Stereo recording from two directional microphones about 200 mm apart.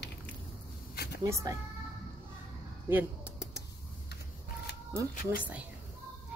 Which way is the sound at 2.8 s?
5° right (ahead or behind).